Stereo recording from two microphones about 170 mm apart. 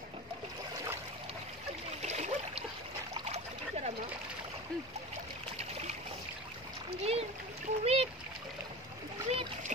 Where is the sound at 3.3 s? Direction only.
40° right (ahead or behind).